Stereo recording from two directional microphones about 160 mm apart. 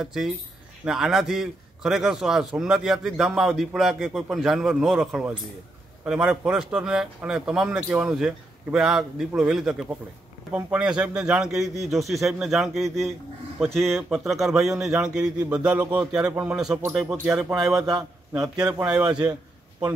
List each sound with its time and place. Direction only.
0.0 s a man's voice: 5° right (ahead or behind)